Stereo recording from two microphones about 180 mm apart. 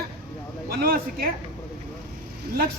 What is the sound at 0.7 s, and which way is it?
Speech, 55° right (ahead or behind).